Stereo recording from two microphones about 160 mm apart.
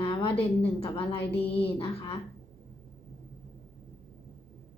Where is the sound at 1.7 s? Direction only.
30° left (ahead or behind).